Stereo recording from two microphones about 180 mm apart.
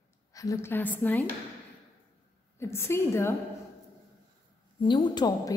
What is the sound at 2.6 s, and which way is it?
Speech, 15° left (ahead or behind).